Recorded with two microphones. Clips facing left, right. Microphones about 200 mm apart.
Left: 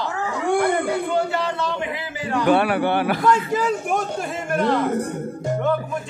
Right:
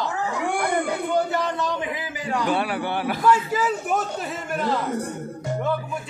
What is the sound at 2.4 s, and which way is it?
Speech, 65° left (ahead or behind).